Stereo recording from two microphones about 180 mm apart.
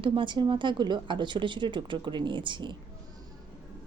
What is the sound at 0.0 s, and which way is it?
A woman's voice, 25° right (ahead or behind).